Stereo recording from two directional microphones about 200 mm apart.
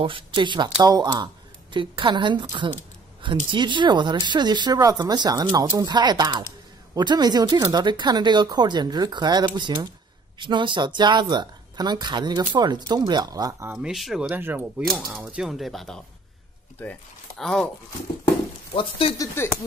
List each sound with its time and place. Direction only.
0.0 s speech: 25° right (ahead or behind)
13.7 s speech: centre (ahead or behind)
18.8 s speech: 25° left (ahead or behind)
19.3 s speech: 10° left (ahead or behind)